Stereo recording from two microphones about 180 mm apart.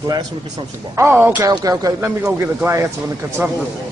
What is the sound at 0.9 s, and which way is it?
Speech, 10° right (ahead or behind).